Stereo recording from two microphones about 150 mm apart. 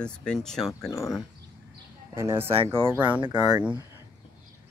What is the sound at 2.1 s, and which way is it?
Speech, 15° right (ahead or behind).